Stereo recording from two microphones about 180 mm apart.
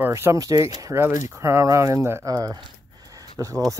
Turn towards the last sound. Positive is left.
turn(degrees=-20)  # may be behind; listen again after turning